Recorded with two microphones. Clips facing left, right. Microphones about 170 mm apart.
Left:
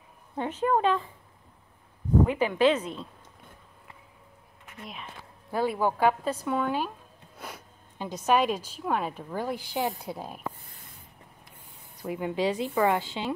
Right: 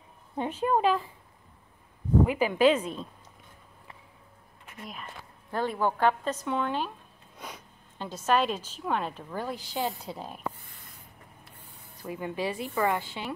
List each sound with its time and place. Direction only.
0.4 s a woman's voice: 15° right (ahead or behind)
2.2 s a woman's voice: 10° right (ahead or behind)
4.8 s speech: 5° left (ahead or behind)
12.0 s speech: 15° left (ahead or behind)